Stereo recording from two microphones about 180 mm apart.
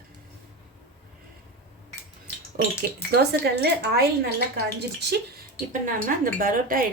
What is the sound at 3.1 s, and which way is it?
A woman's voice, 60° right (ahead or behind).